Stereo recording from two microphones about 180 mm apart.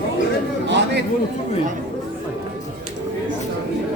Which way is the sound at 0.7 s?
75° right (ahead or behind).